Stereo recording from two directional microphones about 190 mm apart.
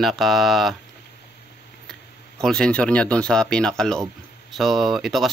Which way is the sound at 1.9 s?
Centre (ahead or behind).